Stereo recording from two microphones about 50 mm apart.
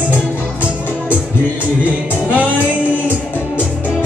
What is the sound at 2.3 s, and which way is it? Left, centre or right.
Music, right.